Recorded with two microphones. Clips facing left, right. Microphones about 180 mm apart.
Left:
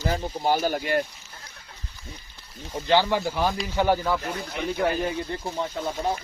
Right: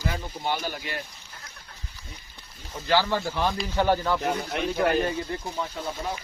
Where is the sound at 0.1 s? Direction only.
40° left (ahead or behind).